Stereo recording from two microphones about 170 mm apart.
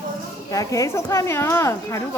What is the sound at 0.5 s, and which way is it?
Speech, 20° left (ahead or behind).